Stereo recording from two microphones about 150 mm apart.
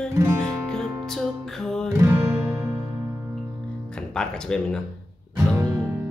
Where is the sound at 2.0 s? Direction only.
15° right (ahead or behind).